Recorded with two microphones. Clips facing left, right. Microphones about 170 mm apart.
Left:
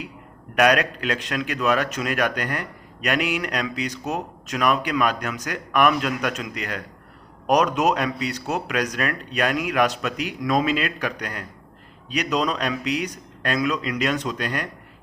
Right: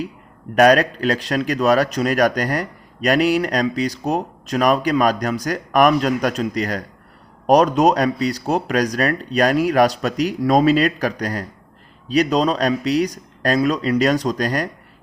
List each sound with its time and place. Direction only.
0.5 s speech: 35° right (ahead or behind)